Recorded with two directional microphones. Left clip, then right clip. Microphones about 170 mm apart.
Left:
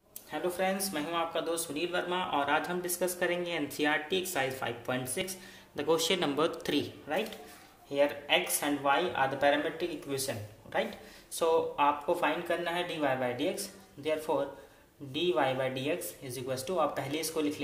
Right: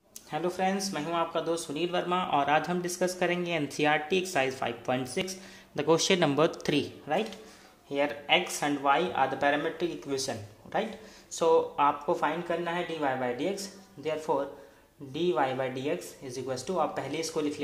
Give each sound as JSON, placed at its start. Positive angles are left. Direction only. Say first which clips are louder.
{"t": 0.3, "sound": "speech", "louder": "right 2 dB", "side_deg": -40}